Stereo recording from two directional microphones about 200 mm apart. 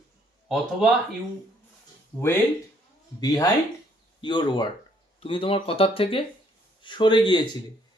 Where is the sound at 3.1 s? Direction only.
20° left (ahead or behind).